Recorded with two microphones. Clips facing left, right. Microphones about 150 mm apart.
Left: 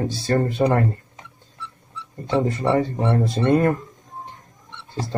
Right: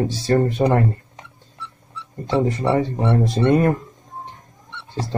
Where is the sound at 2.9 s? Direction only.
20° right (ahead or behind).